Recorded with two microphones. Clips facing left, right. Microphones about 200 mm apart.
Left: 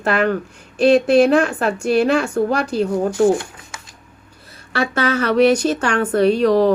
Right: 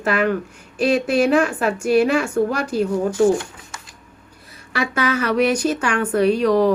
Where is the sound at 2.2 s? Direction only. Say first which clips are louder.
Left 1 dB; 35° left (ahead or behind).